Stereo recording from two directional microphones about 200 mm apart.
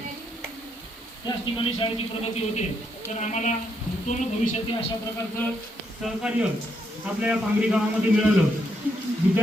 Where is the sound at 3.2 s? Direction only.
35° left (ahead or behind).